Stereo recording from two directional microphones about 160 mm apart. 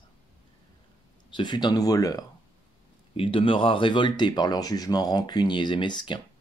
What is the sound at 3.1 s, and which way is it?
Speech, 35° left (ahead or behind).